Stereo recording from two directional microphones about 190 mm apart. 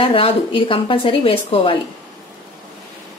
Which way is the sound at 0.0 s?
30° left (ahead or behind).